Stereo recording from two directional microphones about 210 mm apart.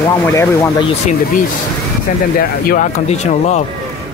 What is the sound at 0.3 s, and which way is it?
Speech, 15° left (ahead or behind).